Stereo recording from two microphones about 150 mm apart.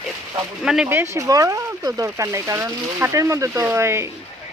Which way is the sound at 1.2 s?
20° right (ahead or behind).